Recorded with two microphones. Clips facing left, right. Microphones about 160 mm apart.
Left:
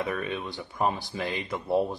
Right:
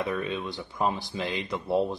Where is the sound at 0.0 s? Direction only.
15° right (ahead or behind).